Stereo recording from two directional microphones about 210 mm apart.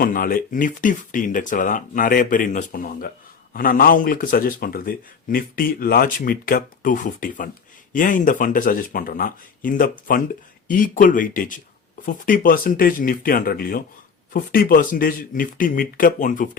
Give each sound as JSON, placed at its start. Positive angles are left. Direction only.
{"t": 0.0, "sound": "a man's voice", "side_deg": 45}